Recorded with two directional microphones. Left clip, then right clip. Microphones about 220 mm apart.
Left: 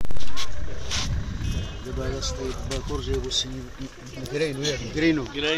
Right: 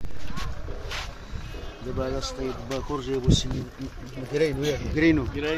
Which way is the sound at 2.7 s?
5° right (ahead or behind).